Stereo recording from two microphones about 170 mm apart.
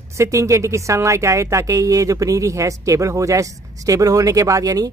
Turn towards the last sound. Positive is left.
turn(degrees=-20)  # may be behind; listen again after turning